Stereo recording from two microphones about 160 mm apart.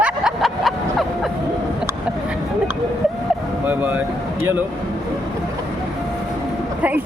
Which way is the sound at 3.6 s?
10° right (ahead or behind).